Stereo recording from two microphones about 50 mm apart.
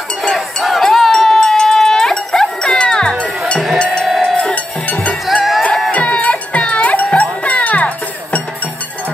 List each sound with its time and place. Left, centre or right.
0.2 s a sound: centre
4.2 s sheep: centre
5.2 s music: centre
5.9 s music: left